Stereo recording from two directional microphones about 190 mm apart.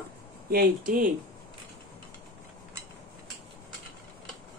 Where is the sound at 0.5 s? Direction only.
50° right (ahead or behind).